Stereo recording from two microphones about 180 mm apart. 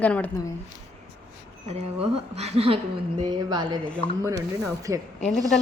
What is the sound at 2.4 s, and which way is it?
A woman's voice, 35° right (ahead or behind).